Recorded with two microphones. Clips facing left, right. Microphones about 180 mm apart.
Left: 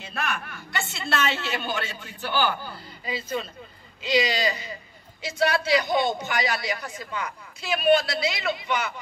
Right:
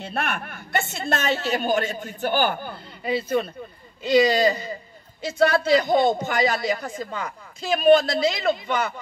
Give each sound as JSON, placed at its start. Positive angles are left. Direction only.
{"t": 0.0, "sound": "a man's voice", "side_deg": -60}